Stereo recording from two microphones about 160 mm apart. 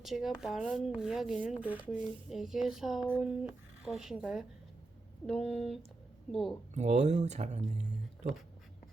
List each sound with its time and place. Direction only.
0.0 s speech: centre (ahead or behind)
6.7 s speech: 50° right (ahead or behind)